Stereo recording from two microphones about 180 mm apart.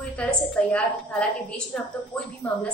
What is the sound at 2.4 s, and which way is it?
Speech, 5° left (ahead or behind).